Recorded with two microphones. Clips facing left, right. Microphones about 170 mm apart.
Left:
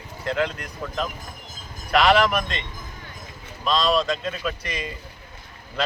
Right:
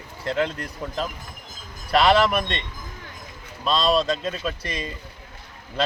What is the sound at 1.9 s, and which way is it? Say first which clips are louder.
Speech: even; 30° right (ahead or behind).